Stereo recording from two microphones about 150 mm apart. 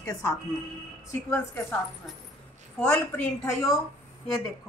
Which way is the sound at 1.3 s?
15° left (ahead or behind).